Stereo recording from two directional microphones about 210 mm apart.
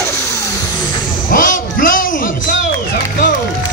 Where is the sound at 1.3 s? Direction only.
40° left (ahead or behind).